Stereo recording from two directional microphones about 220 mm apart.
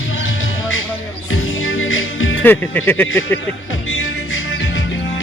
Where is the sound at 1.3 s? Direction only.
65° left (ahead or behind).